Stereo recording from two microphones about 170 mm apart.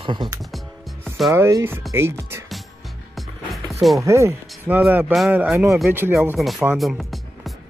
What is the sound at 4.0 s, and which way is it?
Speech, 15° right (ahead or behind).